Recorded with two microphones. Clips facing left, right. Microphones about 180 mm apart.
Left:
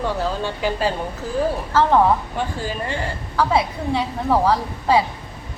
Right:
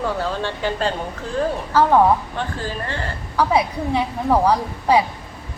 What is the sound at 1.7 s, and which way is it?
Speech, 15° right (ahead or behind).